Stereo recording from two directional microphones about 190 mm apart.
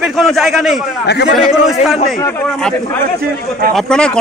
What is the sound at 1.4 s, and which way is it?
Speech, centre (ahead or behind).